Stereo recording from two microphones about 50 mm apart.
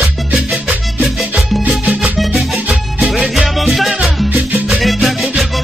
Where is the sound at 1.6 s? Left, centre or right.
Right.